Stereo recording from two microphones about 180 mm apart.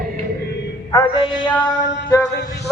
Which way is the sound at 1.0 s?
30° left (ahead or behind).